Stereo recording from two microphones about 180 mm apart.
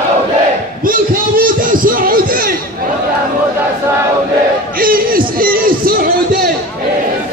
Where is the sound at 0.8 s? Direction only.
50° right (ahead or behind).